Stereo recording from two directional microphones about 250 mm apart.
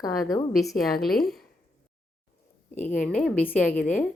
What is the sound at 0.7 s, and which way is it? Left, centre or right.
Speech, centre.